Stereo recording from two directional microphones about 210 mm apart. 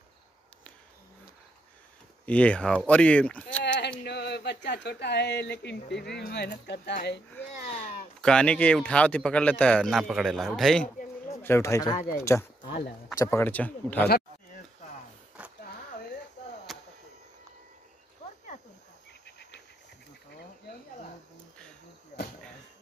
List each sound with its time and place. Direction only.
2.2 s speech: 5° left (ahead or behind)
4.0 s speech: 55° left (ahead or behind)
7.3 s speech: 5° left (ahead or behind)
11.3 s speech: 15° left (ahead or behind)
16.7 s a sound: centre (ahead or behind)